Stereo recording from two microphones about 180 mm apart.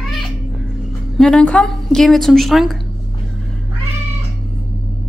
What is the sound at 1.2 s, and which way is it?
A woman's voice, 5° left (ahead or behind).